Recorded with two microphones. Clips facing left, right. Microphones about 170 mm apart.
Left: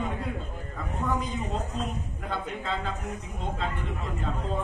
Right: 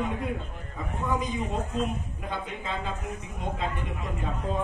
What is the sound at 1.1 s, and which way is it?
A man's voice, 20° right (ahead or behind).